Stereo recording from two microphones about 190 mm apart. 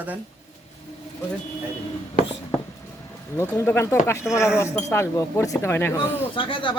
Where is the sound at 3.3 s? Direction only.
15° left (ahead or behind).